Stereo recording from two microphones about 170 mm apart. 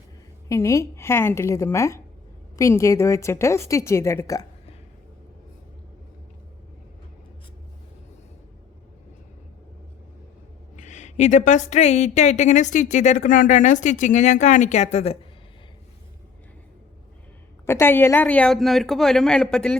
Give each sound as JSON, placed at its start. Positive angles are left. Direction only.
{"t": 0.4, "sound": "a woman's voice", "side_deg": 20}
{"t": 10.8, "sound": "speech", "side_deg": 45}
{"t": 17.7, "sound": "speech", "side_deg": 15}